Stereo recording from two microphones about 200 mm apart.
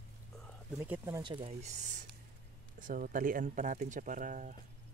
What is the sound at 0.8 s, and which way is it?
Speech, 10° right (ahead or behind).